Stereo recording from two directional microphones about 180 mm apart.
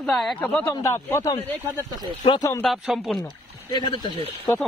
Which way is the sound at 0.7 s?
15° left (ahead or behind).